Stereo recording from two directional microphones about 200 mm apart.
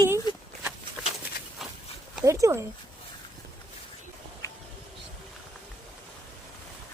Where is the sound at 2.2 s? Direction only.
15° right (ahead or behind).